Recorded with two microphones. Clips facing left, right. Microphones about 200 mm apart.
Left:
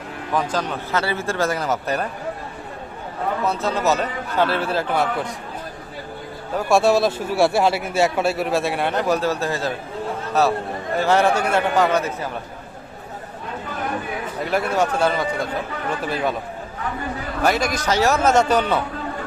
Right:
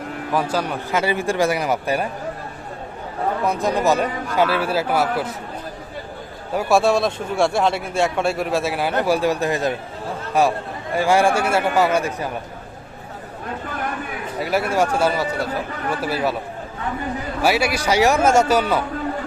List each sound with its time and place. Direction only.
0.3 s a man's voice: 10° right (ahead or behind)
3.4 s a man's voice: 15° right (ahead or behind)
6.5 s a man's voice: 5° right (ahead or behind)
14.4 s a man's voice: 10° right (ahead or behind)
17.4 s a man's voice: 10° right (ahead or behind)